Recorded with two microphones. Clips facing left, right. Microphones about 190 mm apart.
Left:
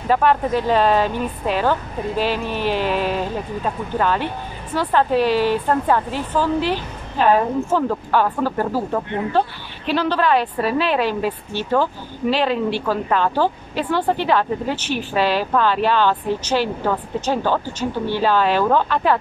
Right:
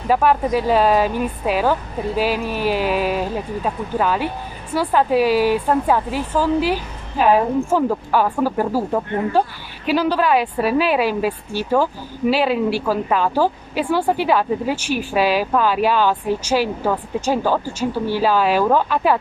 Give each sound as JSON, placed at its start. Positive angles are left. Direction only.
{"t": 0.1, "sound": "a woman's voice", "side_deg": -10}